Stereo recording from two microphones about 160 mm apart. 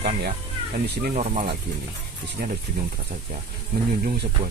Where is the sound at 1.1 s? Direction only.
45° right (ahead or behind).